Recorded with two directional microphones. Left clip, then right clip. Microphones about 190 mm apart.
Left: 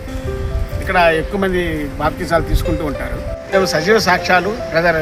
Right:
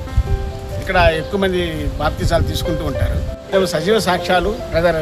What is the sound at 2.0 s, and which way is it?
Speech, 5° right (ahead or behind).